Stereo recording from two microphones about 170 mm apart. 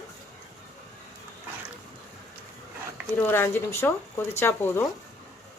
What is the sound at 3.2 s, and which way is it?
Speech, 10° left (ahead or behind).